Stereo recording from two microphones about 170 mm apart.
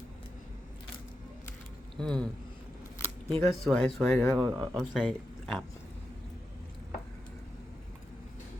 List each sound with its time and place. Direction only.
2.0 s speech: 5° left (ahead or behind)
3.0 s camera: 15° left (ahead or behind)
3.6 s speech: 5° left (ahead or behind)
4.4 s speech: 20° right (ahead or behind)
4.8 s speech: centre (ahead or behind)